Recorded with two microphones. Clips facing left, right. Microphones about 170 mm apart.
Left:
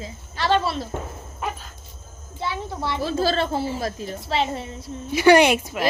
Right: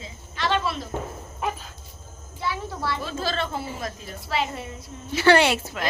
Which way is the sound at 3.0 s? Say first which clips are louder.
Left 6 dB; 35° left (ahead or behind).